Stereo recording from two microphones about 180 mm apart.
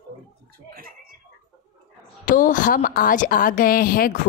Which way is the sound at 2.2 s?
45° left (ahead or behind).